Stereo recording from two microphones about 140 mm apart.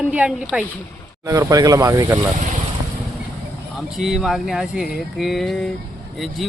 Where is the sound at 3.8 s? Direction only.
Centre (ahead or behind).